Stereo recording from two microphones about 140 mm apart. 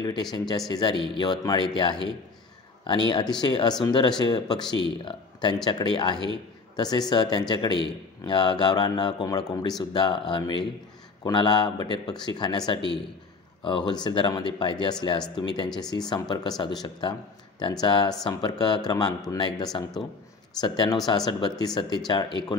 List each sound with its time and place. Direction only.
0.7 s a man's voice: 30° left (ahead or behind)